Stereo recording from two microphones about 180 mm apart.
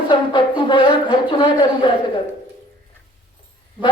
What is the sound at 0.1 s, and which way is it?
Speech, 25° left (ahead or behind).